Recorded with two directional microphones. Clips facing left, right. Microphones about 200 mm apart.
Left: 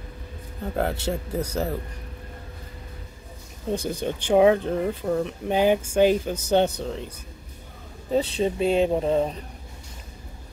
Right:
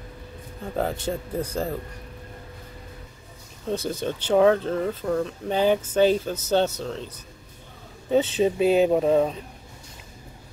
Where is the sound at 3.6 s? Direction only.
15° left (ahead or behind).